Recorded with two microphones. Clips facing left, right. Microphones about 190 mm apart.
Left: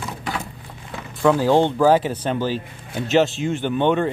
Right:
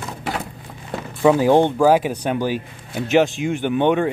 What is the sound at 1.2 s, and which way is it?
Speech, 15° right (ahead or behind).